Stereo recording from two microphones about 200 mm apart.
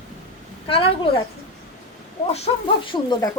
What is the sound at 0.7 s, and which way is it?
Speech, 25° left (ahead or behind).